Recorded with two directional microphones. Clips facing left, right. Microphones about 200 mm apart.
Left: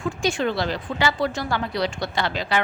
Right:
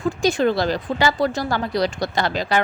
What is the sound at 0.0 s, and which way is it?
A woman's voice, 40° right (ahead or behind).